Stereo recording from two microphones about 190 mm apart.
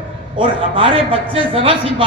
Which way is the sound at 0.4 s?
25° right (ahead or behind).